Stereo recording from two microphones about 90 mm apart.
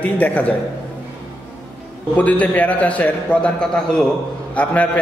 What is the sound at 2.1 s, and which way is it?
A man's voice, 15° left (ahead or behind).